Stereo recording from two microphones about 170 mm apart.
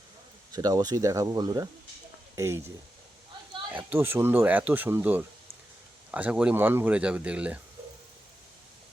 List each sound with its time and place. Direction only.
0.5 s speech: 20° right (ahead or behind)
3.7 s speech: 10° right (ahead or behind)